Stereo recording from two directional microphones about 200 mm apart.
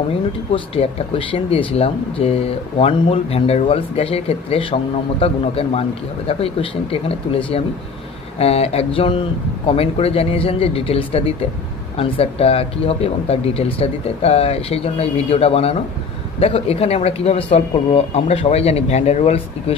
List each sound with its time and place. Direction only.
0.5 s speech: 30° left (ahead or behind)